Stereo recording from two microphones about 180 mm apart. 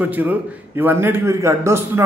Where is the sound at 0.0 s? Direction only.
10° right (ahead or behind).